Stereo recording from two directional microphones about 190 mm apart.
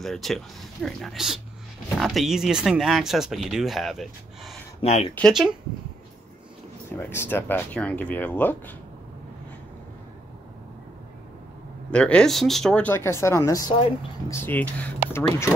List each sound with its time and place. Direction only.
0.0 s speech: centre (ahead or behind)
4.8 s speech: 35° left (ahead or behind)
5.1 s speech: centre (ahead or behind)
7.0 s speech: 10° left (ahead or behind)
11.9 s speech: 5° left (ahead or behind)